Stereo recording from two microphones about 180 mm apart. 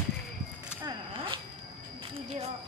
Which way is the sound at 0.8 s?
25° right (ahead or behind).